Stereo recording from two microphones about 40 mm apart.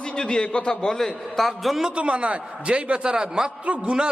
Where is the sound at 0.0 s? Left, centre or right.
Centre.